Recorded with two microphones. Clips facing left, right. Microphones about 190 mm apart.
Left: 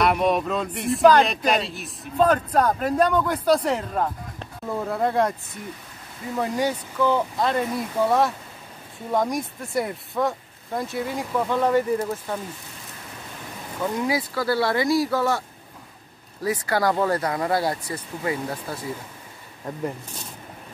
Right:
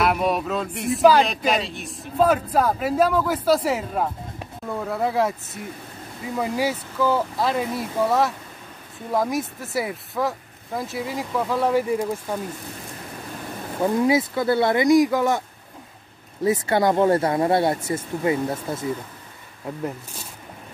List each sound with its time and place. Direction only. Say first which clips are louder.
0.0 s speech: left 1 dB; centre (ahead or behind)
6.3 s speech: even; 5° right (ahead or behind)
13.7 s speech: right 5 dB; 25° right (ahead or behind)
16.4 s speech: right 3 dB; 25° right (ahead or behind)